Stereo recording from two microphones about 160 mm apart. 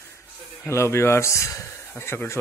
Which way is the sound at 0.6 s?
15° left (ahead or behind).